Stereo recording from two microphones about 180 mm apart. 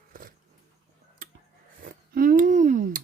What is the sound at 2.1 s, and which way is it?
Speech, 50° right (ahead or behind).